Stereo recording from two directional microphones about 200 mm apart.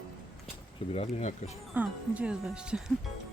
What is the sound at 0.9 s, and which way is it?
Speech, 35° left (ahead or behind).